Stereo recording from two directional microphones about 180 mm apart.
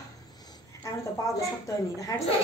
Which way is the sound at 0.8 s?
15° left (ahead or behind).